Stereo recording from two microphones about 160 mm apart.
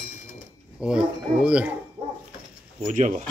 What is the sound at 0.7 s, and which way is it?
Speech, 5° right (ahead or behind).